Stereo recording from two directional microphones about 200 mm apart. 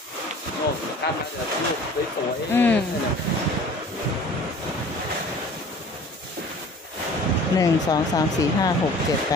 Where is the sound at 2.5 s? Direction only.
10° left (ahead or behind).